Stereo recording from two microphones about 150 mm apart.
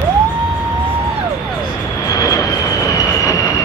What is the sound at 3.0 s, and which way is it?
Train, 20° left (ahead or behind).